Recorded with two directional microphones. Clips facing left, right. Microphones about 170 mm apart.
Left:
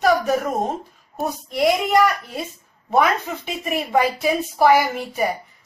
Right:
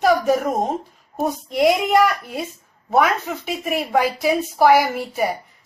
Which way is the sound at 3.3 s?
5° right (ahead or behind).